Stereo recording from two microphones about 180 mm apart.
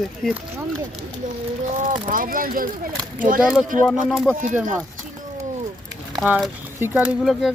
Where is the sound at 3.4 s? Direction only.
5° right (ahead or behind).